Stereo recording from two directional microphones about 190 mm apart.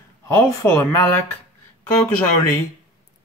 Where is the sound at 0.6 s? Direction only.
15° left (ahead or behind).